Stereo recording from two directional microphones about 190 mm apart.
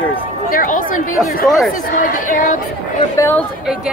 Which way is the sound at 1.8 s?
45° left (ahead or behind).